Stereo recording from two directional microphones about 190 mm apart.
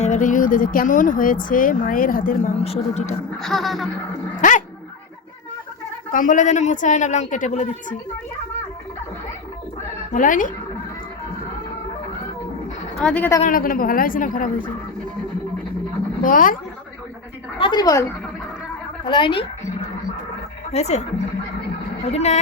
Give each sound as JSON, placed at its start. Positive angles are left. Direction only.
{"t": 0.0, "sound": "speech", "side_deg": 40}
{"t": 2.6, "sound": "speech", "side_deg": 35}
{"t": 3.4, "sound": "a sound", "side_deg": 0}
{"t": 4.4, "sound": "dog", "side_deg": 40}
{"t": 6.1, "sound": "speech", "side_deg": 45}
{"t": 10.1, "sound": "speech", "side_deg": 45}
{"t": 13.0, "sound": "speech", "side_deg": 5}
{"t": 13.4, "sound": "speech", "side_deg": 45}
{"t": 16.2, "sound": "speech", "side_deg": 45}
{"t": 17.6, "sound": "speech", "side_deg": 20}
{"t": 19.0, "sound": "speech", "side_deg": 25}
{"t": 20.7, "sound": "speech", "side_deg": 35}
{"t": 22.0, "sound": "speech", "side_deg": 35}